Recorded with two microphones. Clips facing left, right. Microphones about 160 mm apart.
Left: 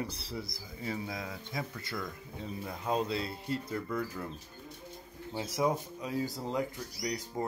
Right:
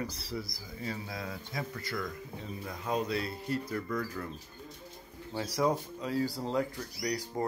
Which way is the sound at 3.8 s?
10° left (ahead or behind).